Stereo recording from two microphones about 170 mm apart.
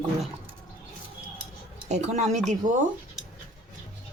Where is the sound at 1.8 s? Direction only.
45° right (ahead or behind).